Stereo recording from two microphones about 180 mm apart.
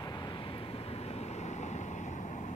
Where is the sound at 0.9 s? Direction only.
35° left (ahead or behind).